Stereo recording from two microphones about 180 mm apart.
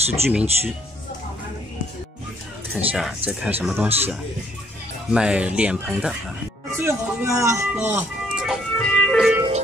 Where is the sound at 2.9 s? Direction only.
5° right (ahead or behind).